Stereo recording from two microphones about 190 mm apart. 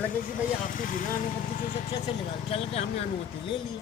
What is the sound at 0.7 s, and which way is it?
Speech, 45° left (ahead or behind).